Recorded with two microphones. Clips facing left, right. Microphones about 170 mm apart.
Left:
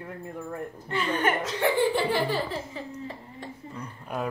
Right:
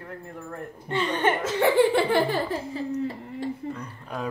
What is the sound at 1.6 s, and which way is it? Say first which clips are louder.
Laughter: right 5 dB; 55° right (ahead or behind).